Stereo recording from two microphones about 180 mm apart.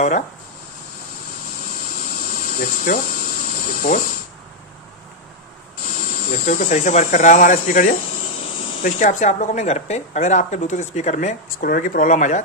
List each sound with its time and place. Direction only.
2.1 s electric toothbrush: 45° left (ahead or behind)
6.0 s speech: 45° left (ahead or behind)